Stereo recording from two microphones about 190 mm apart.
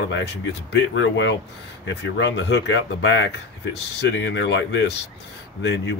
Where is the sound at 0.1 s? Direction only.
65° left (ahead or behind).